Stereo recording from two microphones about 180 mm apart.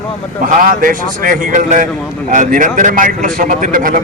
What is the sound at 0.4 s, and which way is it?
A man's voice, 50° right (ahead or behind).